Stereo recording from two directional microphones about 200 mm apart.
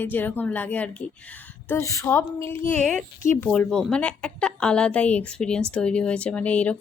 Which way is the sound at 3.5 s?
Centre (ahead or behind).